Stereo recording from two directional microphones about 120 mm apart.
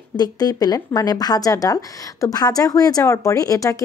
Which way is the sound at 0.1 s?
35° left (ahead or behind).